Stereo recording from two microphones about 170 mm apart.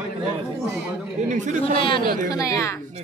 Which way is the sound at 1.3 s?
45° right (ahead or behind).